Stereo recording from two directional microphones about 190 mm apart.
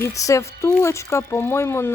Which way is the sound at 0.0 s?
15° left (ahead or behind).